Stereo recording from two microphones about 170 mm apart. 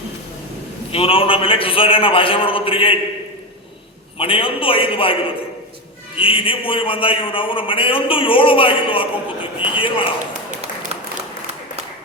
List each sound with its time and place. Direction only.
0.9 s a man's voice: 35° left (ahead or behind)
4.2 s a man's voice: 30° left (ahead or behind)
6.1 s a man's voice: 30° left (ahead or behind)
10.9 s applause: 40° right (ahead or behind)